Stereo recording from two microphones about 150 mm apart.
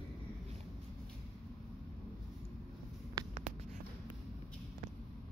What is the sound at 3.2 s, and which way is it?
Writing, 25° right (ahead or behind).